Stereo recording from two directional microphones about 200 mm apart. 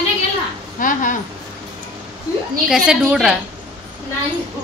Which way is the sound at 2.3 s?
15° left (ahead or behind).